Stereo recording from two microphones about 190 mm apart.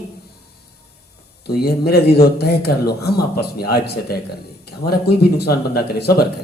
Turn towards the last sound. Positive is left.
turn(degrees=55)  # may be behind; listen again after turning